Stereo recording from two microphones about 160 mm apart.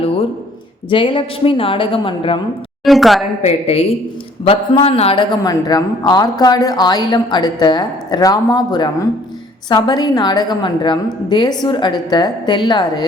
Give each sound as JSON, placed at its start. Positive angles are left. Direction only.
{"t": 0.9, "sound": "a woman's voice", "side_deg": 30}
{"t": 2.8, "sound": "speech", "side_deg": 0}
{"t": 3.4, "sound": "a woman's voice", "side_deg": 40}